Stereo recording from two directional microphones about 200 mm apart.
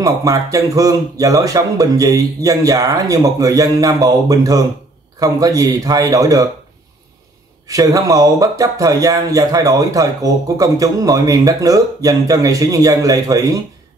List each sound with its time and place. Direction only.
0.0 s speech: 15° right (ahead or behind)
7.6 s speech: 15° right (ahead or behind)